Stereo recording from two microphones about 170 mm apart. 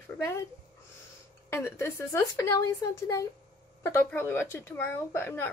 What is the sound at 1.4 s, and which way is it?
A woman's voice, 15° left (ahead or behind).